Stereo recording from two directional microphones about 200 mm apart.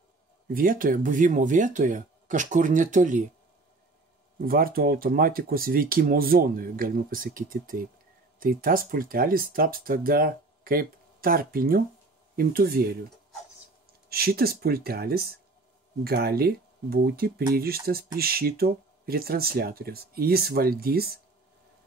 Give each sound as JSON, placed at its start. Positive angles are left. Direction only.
{"t": 0.5, "sound": "speech", "side_deg": -45}
{"t": 4.5, "sound": "speech", "side_deg": -45}
{"t": 14.0, "sound": "speech", "side_deg": -50}